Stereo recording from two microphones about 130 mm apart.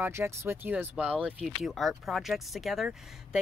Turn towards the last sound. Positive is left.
turn(degrees=-5)  # may be behind; listen again after turning